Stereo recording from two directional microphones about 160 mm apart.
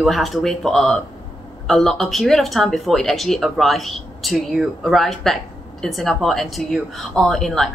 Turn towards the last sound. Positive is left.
turn(degrees=0)  # may be behind; listen again after turning